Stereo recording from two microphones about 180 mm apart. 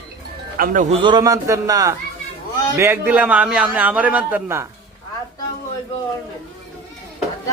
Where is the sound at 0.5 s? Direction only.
50° right (ahead or behind).